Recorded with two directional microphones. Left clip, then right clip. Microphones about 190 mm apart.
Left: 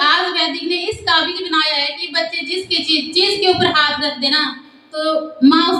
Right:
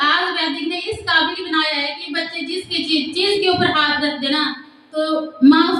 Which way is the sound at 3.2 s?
15° left (ahead or behind).